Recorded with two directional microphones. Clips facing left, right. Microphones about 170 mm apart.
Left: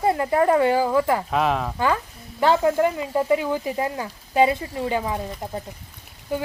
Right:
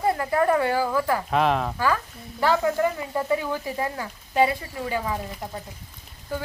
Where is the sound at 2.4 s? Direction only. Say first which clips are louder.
Left 3 dB; 25° left (ahead or behind).